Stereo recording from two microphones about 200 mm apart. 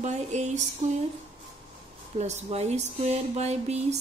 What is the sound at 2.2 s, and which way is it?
Speech, 35° right (ahead or behind).